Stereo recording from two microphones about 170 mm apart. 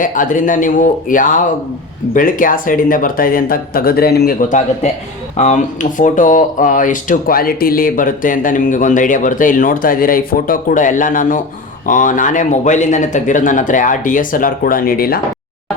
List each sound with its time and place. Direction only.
0.0 s speech: 50° left (ahead or behind)